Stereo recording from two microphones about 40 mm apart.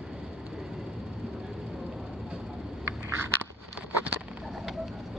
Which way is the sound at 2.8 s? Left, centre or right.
Right.